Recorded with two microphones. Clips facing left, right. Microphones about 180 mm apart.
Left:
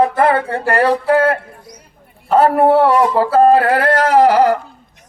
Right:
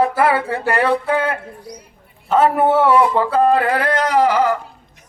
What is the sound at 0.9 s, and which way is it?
Speech, 35° left (ahead or behind).